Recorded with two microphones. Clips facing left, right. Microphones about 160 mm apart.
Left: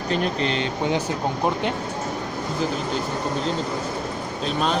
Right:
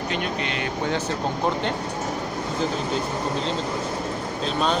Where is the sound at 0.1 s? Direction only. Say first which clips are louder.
Left 7 dB; 35° left (ahead or behind).